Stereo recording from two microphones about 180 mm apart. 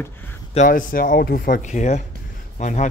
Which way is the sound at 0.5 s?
50° left (ahead or behind).